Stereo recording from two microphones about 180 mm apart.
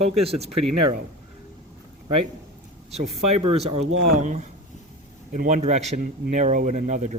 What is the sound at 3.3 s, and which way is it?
Speech, 35° right (ahead or behind).